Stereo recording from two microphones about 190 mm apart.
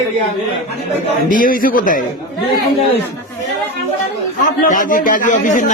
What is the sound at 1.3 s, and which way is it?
Speech, 45° left (ahead or behind).